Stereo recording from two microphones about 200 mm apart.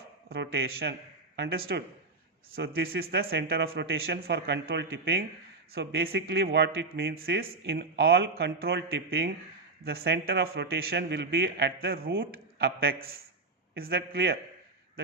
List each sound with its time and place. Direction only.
0.3 s a man's voice: 50° right (ahead or behind)